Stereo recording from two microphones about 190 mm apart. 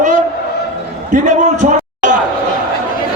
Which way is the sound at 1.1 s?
40° right (ahead or behind).